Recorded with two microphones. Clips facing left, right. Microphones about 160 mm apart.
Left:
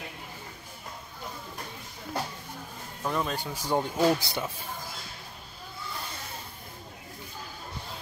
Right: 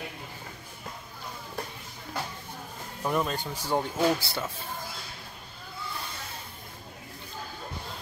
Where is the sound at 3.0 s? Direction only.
10° right (ahead or behind).